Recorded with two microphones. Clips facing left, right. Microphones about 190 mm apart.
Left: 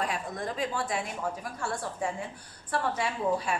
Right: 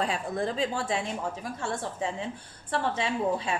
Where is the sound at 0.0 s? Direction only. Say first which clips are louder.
Right 4 dB; 30° right (ahead or behind).